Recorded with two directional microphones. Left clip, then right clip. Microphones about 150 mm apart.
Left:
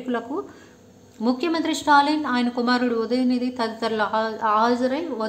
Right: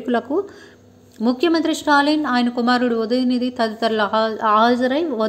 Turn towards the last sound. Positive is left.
turn(degrees=-30)  # may be behind; listen again after turning